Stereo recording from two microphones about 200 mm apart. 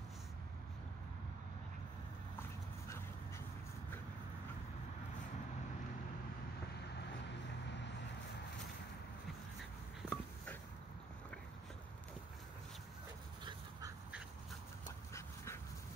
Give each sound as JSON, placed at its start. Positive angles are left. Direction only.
{"t": 10.0, "sound": "a sound", "side_deg": 10}
{"t": 13.4, "sound": "duck", "side_deg": -20}
{"t": 15.1, "sound": "dog", "side_deg": 15}